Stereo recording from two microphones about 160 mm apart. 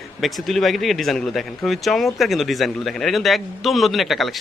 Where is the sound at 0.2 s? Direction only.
Centre (ahead or behind).